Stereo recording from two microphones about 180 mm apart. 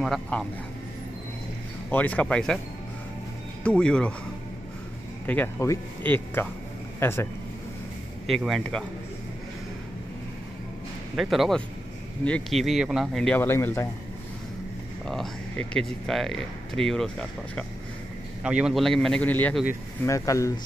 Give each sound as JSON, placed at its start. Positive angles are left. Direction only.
{"t": 0.0, "sound": "speech", "side_deg": 0}
{"t": 1.9, "sound": "speech", "side_deg": 10}
{"t": 3.6, "sound": "speech", "side_deg": 5}
{"t": 5.2, "sound": "speech", "side_deg": 10}
{"t": 8.3, "sound": "speech", "side_deg": 0}
{"t": 11.1, "sound": "speech", "side_deg": 0}
{"t": 15.0, "sound": "speech", "side_deg": 5}